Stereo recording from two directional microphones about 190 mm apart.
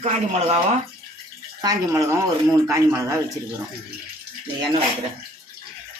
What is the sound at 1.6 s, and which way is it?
Speech, 20° right (ahead or behind).